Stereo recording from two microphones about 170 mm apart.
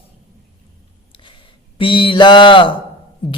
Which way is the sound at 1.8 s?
30° left (ahead or behind).